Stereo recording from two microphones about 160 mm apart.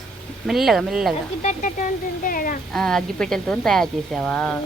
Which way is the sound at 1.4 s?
50° left (ahead or behind).